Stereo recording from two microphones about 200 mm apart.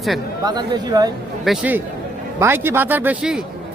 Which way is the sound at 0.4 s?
20° right (ahead or behind).